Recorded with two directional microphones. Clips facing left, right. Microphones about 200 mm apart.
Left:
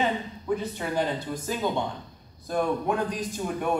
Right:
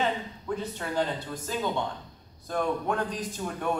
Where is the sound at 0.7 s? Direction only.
10° left (ahead or behind).